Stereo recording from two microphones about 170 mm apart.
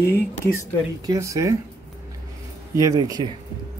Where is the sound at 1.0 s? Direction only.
20° right (ahead or behind).